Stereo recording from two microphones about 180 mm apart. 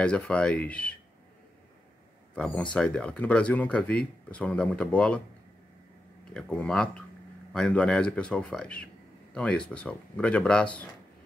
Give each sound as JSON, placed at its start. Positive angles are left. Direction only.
{"t": 0.0, "sound": "speech", "side_deg": 5}
{"t": 2.3, "sound": "speech", "side_deg": 5}
{"t": 6.3, "sound": "speech", "side_deg": 5}